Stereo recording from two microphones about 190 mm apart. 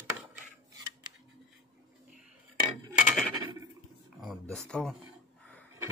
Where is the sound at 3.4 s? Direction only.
20° right (ahead or behind).